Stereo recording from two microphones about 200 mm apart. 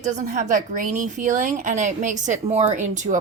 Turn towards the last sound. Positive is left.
turn(degrees=-40)  # may be behind; listen again after turning